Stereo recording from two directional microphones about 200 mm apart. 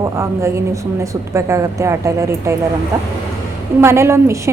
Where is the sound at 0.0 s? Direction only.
15° right (ahead or behind).